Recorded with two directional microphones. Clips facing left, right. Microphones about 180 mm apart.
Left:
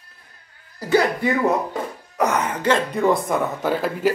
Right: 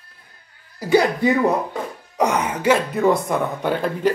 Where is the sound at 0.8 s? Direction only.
15° right (ahead or behind); by 4.1 s 5° left (ahead or behind).